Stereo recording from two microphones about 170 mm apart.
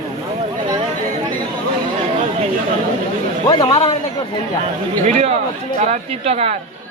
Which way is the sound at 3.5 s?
25° left (ahead or behind).